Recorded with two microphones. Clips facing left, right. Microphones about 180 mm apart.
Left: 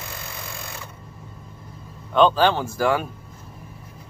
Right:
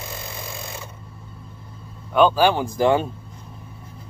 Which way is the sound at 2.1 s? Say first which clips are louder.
Right 1 dB; 10° right (ahead or behind).